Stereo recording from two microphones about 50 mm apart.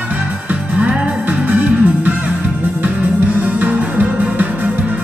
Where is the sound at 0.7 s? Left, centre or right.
Right.